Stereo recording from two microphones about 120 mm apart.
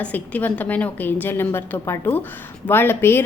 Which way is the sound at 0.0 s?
15° left (ahead or behind).